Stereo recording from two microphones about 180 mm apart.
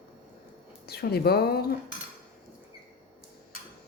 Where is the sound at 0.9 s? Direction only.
60° left (ahead or behind).